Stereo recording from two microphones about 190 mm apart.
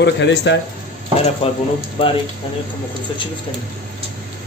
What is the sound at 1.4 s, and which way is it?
Speech, 30° left (ahead or behind).